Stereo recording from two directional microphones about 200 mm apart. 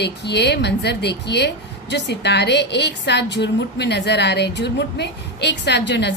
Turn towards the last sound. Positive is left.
turn(degrees=60)  # may be behind; listen again after turning